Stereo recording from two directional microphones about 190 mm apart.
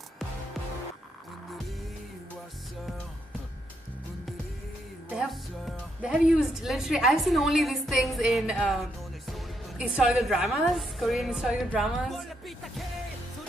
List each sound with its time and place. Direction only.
5.1 s speech: centre (ahead or behind)
9.9 s a woman's voice: centre (ahead or behind)